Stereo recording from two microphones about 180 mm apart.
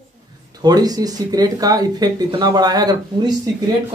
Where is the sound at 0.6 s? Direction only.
20° right (ahead or behind).